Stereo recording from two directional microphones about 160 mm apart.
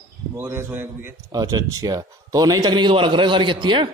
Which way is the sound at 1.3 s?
25° right (ahead or behind).